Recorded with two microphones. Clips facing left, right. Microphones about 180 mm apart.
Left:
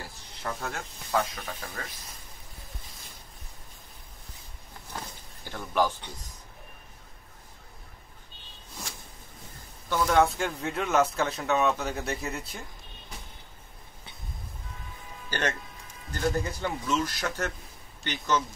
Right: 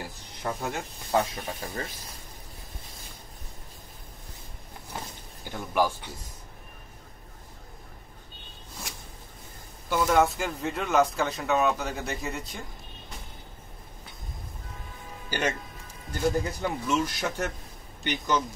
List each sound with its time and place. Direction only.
0.4 s speech: 15° right (ahead or behind)
1.1 s speech: 30° right (ahead or behind)
4.9 s a sound: 15° right (ahead or behind)
9.8 s speech: 5° right (ahead or behind)
15.2 s speech: 10° right (ahead or behind)